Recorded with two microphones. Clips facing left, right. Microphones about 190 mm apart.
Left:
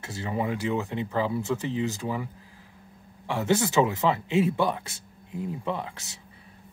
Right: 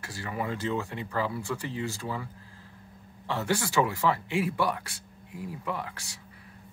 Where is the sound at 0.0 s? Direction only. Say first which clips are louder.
Left 4 dB; 20° left (ahead or behind).